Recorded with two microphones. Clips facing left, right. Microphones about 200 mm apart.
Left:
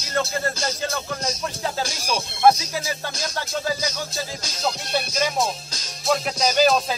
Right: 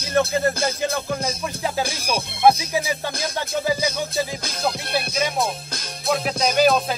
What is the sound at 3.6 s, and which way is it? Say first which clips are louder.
Music: right 4 dB; 15° right (ahead or behind).